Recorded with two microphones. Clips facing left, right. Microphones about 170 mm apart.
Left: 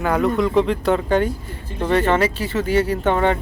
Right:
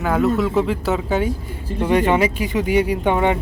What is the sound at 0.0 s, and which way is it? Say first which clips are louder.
Speech: even; 5° right (ahead or behind).